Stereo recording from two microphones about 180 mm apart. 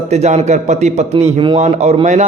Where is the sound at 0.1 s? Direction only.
40° right (ahead or behind).